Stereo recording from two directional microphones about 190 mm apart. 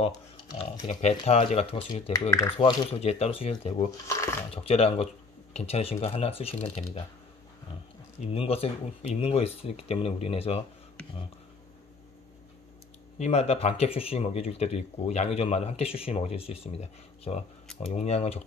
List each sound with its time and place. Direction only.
0.0 s speech: 30° left (ahead or behind)
3.9 s speech: 15° left (ahead or behind)
4.5 s speech: 30° left (ahead or behind)
8.2 s speech: 30° left (ahead or behind)
13.2 s speech: 35° left (ahead or behind)